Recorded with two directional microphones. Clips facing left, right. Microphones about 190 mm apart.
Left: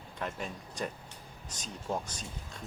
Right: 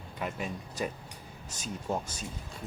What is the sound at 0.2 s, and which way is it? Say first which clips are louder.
Speech: right 2 dB; 5° right (ahead or behind).